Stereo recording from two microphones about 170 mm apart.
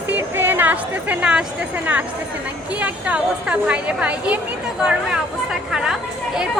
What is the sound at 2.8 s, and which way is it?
Speech, 5° right (ahead or behind).